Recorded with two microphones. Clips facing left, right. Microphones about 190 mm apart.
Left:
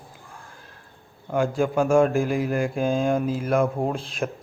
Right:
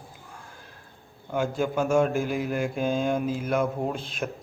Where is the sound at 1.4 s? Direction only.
Centre (ahead or behind).